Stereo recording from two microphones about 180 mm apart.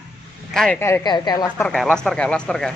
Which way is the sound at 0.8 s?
20° left (ahead or behind).